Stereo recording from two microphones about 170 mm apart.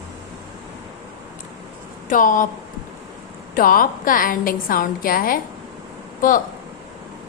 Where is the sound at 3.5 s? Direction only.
55° left (ahead or behind).